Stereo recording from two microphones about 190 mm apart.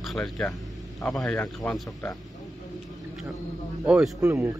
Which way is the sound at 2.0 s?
20° left (ahead or behind).